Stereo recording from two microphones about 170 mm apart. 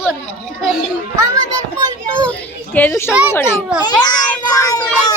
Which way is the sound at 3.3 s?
15° left (ahead or behind).